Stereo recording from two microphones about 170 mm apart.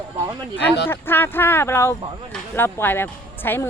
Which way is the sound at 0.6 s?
80° left.